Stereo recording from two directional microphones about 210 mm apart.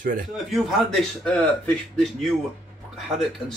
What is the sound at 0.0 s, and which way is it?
Speech, 40° right (ahead or behind).